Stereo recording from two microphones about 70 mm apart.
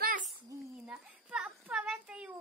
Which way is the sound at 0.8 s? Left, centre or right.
Centre.